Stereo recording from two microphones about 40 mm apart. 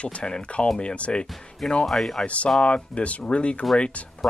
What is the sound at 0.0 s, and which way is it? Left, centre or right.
Speech, left.